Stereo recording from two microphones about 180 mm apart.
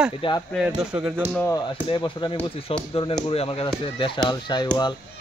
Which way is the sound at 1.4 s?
10° left (ahead or behind).